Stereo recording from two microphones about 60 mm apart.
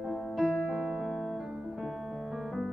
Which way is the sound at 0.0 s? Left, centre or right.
Centre.